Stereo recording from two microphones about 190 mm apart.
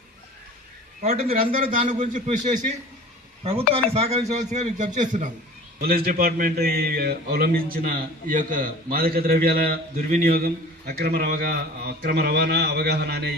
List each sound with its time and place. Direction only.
1.0 s a man's voice: 35° right (ahead or behind)
3.8 s a man's voice: 30° right (ahead or behind); by 13.3 s 60° right (ahead or behind)